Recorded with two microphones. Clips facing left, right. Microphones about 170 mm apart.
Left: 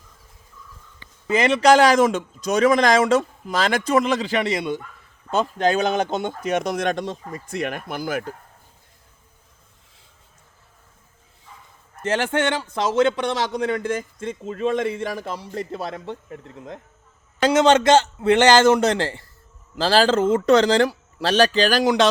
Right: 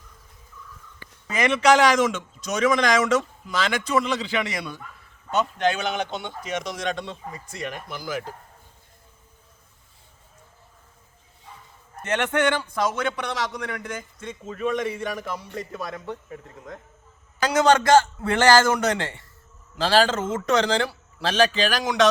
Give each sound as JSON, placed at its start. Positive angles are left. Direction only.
{"t": 0.9, "sound": "a man's voice", "side_deg": 30}
{"t": 4.4, "sound": "a man's voice", "side_deg": 25}
{"t": 12.0, "sound": "a man's voice", "side_deg": 30}
{"t": 17.4, "sound": "a man's voice", "side_deg": 25}